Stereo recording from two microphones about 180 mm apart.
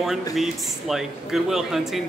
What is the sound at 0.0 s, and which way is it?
Speech, centre (ahead or behind).